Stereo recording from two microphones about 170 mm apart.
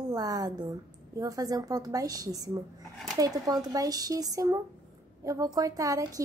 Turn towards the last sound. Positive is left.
turn(degrees=-20)  # may be behind; listen again after turning